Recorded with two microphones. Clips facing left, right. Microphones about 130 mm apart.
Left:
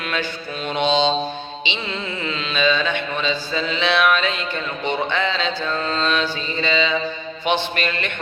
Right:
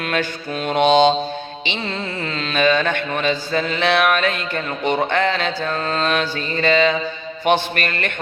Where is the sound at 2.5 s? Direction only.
50° right (ahead or behind).